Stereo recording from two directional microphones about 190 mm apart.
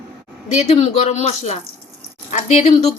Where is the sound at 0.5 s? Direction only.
35° left (ahead or behind).